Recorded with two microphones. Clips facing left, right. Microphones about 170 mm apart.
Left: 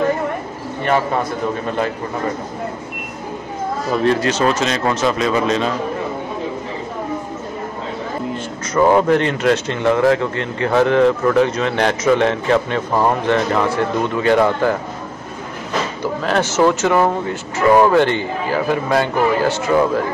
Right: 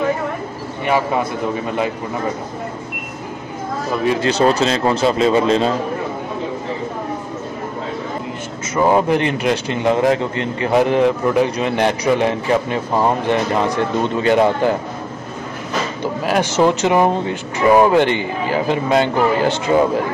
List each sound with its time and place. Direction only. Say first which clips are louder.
0.8 s speech: even; 10° right (ahead or behind)
4.2 s a man's voice: right 2 dB; 35° right (ahead or behind)
8.7 s a man's voice: left 2 dB; 15° right (ahead or behind)
16.3 s speech: even; 15° right (ahead or behind)